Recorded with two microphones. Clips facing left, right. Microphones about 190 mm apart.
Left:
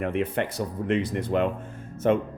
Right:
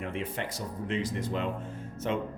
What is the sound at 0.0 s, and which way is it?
Speech, 60° left (ahead or behind).